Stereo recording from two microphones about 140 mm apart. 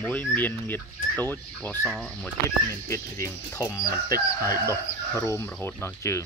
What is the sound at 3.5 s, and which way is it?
Chicken, 25° left (ahead or behind).